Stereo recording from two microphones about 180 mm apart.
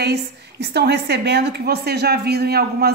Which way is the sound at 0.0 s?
65° right (ahead or behind).